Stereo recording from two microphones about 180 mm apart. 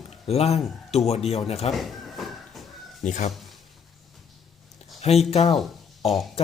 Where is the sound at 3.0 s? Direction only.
45° left (ahead or behind).